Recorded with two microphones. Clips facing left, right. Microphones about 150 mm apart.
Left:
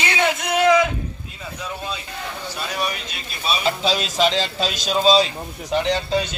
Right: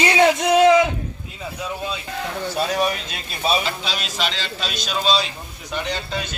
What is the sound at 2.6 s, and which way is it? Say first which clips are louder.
Speech: right 6 dB; 40° right (ahead or behind).